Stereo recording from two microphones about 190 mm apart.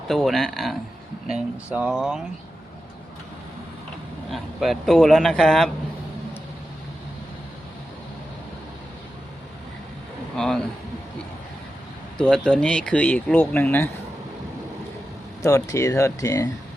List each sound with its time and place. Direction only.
0.1 s a man's voice: centre (ahead or behind)
4.3 s a man's voice: centre (ahead or behind)
10.3 s a man's voice: 5° left (ahead or behind)
12.1 s speech: 5° left (ahead or behind)
15.4 s speech: 15° left (ahead or behind)